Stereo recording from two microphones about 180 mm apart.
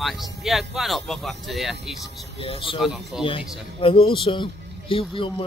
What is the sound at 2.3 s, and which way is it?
Speech, 30° left (ahead or behind).